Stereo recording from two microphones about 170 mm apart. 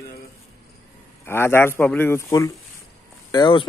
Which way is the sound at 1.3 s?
15° left (ahead or behind).